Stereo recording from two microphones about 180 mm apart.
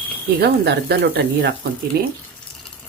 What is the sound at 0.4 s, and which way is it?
Speech, 65° right (ahead or behind).